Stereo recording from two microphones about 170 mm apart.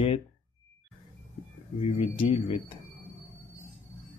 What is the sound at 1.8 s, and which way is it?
Speech, 35° left (ahead or behind).